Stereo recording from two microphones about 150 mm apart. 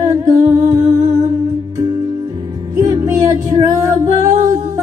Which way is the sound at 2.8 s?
20° right (ahead or behind).